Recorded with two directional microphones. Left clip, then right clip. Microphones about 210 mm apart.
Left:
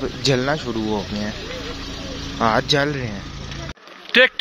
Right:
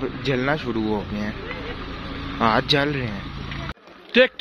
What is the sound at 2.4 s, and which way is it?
Speech, 5° left (ahead or behind).